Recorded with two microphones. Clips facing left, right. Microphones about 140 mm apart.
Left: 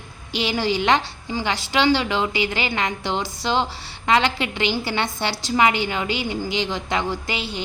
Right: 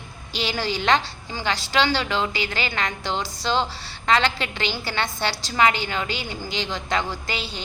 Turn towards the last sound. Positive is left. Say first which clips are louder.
# left 2 dB
turn(degrees=20)  # may be behind; listen again after turning